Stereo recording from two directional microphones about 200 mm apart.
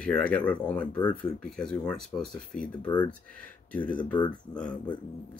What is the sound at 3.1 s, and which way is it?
Speech, 5° left (ahead or behind).